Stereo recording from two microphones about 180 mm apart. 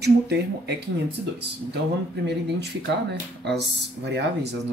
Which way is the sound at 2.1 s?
70° right (ahead or behind).